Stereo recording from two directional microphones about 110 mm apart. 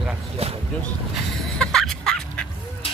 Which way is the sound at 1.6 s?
5° left (ahead or behind).